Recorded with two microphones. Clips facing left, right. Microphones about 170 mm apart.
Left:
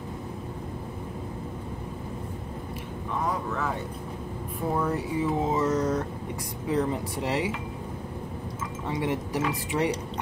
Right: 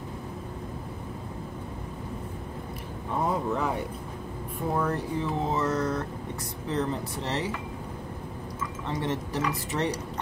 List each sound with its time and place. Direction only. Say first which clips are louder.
3.3 s speech: right 3 dB; 20° right (ahead or behind)
4.7 s speech: left 1 dB; 5° left (ahead or behind)
8.8 s speech: left 2 dB; 10° left (ahead or behind)